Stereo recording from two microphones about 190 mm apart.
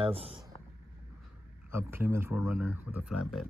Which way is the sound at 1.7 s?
15° right (ahead or behind).